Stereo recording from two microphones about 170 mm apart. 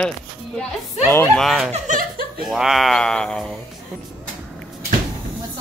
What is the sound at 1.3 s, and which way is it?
Speech, centre (ahead or behind).